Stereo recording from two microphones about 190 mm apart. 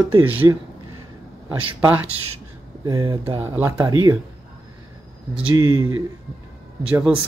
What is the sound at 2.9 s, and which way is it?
Speech, 25° right (ahead or behind).